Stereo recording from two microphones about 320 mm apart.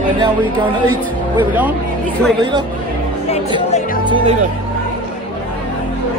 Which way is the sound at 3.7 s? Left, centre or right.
Left.